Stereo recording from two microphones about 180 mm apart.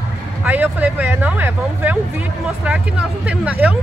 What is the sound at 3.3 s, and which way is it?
Speech, 10° right (ahead or behind).